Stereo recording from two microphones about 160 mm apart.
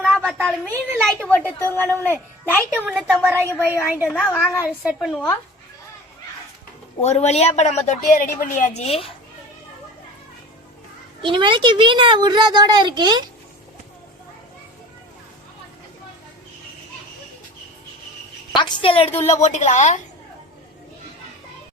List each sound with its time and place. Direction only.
0.0 s a sound: 5° left (ahead or behind)
1.5 s a woman's voice: 15° left (ahead or behind)
2.8 s a woman's voice: 5° right (ahead or behind)
3.2 s a woman's voice: 15° right (ahead or behind)
4.1 s a woman's voice: 5° left (ahead or behind)
4.4 s a woman's voice: 5° right (ahead or behind)
7.0 s speech: 45° left (ahead or behind)
11.2 s a child's voice: 30° right (ahead or behind)
18.5 s a woman's voice: 30° left (ahead or behind); by 20.0 s 50° left (ahead or behind)